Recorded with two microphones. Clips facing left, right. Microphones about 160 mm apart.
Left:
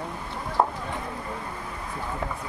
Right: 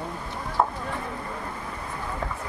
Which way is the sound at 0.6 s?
20° left (ahead or behind).